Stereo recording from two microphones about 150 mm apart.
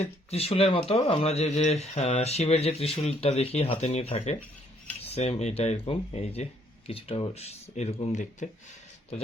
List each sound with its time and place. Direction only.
0.0 s speech: 45° left (ahead or behind)